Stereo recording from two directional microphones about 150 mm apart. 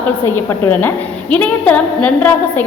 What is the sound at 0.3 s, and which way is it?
A woman's voice, 15° left (ahead or behind).